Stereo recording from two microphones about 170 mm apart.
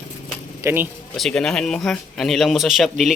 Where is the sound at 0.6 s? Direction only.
15° right (ahead or behind).